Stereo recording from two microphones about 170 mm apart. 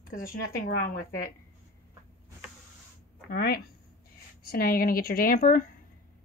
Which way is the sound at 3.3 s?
65° left (ahead or behind).